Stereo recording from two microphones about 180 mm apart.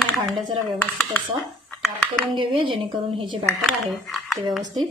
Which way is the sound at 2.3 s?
30° right (ahead or behind).